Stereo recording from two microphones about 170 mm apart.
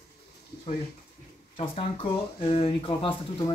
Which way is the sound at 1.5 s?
30° left (ahead or behind).